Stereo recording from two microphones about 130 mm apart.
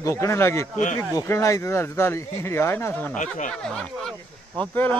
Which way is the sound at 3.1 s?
75° left (ahead or behind).